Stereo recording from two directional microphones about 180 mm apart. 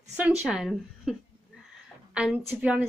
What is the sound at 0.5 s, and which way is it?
Speech, 5° right (ahead or behind).